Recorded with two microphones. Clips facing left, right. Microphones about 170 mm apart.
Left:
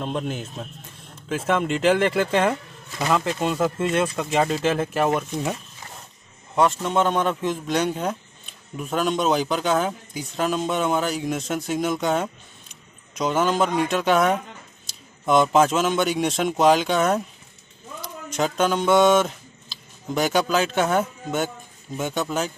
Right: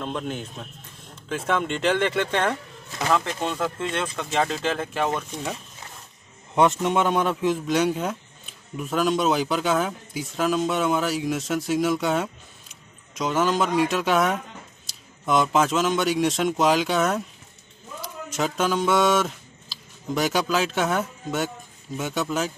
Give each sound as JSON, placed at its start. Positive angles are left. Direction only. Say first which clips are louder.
{"t": 0.2, "sound": "speech", "louder": "left 2 dB", "side_deg": 5}
{"t": 6.5, "sound": "speech", "louder": "even", "side_deg": -20}